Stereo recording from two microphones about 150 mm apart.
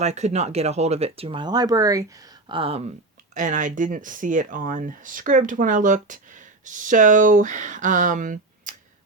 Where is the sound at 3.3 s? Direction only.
60° right (ahead or behind).